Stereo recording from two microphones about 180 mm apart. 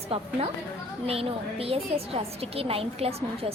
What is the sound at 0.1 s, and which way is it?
A woman's voice, 35° right (ahead or behind).